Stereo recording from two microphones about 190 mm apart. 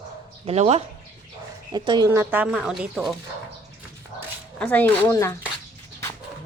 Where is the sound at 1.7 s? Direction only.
20° right (ahead or behind).